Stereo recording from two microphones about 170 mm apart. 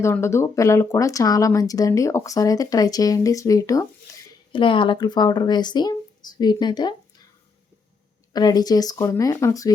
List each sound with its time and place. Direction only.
0.0 s speech: 15° left (ahead or behind)
8.3 s speech: 25° left (ahead or behind)